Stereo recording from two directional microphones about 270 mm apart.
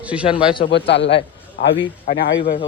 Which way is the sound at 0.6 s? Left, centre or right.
Left.